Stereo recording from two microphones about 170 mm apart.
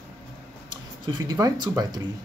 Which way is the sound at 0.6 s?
25° right (ahead or behind).